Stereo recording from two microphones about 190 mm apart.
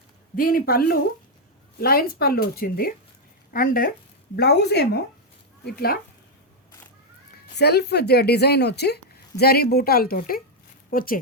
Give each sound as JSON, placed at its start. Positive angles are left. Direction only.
{"t": 0.3, "sound": "a woman's voice", "side_deg": 50}
{"t": 4.4, "sound": "a woman's voice", "side_deg": 60}
{"t": 7.5, "sound": "a woman's voice", "side_deg": 60}